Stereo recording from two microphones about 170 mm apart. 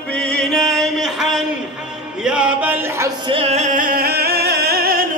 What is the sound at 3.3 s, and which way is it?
Music, 35° right (ahead or behind).